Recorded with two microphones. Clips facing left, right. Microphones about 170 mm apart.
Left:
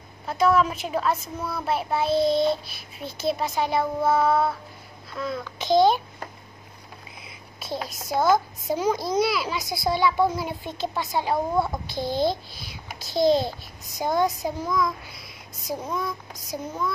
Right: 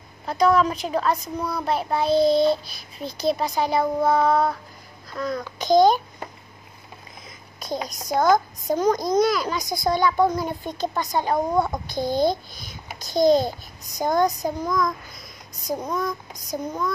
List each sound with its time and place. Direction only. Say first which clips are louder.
0.3 s a child's voice: right 2 dB; 5° left (ahead or behind)
5.1 s a sound: right 3 dB; 5° left (ahead or behind)
5.6 s a child's voice: right 2 dB; centre (ahead or behind)
7.6 s a child's voice: right 2 dB; 5° left (ahead or behind)
11.9 s a child's voice: right 3 dB; 45° right (ahead or behind)
12.5 s a child's voice: right 1 dB; 5° left (ahead or behind)